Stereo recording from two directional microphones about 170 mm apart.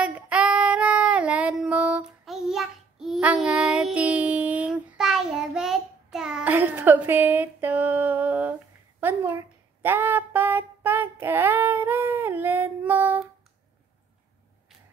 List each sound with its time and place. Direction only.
0.0 s child singing: 5° right (ahead or behind)